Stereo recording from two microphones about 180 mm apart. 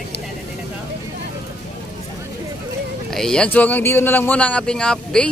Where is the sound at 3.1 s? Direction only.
Centre (ahead or behind).